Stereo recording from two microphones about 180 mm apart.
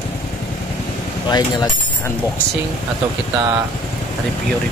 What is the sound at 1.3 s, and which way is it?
Speech, 20° left (ahead or behind).